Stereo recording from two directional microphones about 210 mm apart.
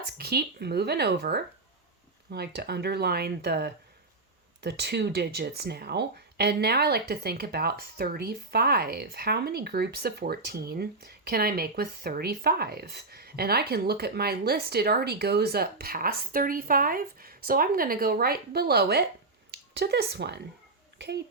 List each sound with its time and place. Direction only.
0.2 s speech: 50° right (ahead or behind)